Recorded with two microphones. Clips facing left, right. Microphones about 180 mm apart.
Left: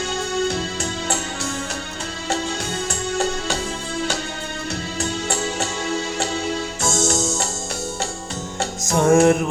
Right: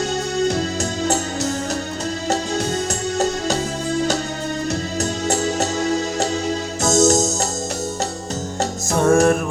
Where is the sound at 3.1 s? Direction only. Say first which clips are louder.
Right 3 dB; 40° right (ahead or behind).